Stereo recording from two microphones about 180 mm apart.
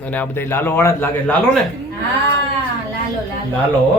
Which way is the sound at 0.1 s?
10° left (ahead or behind).